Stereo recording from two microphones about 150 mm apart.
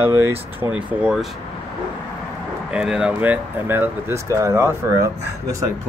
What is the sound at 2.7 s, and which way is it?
Speech, 5° right (ahead or behind).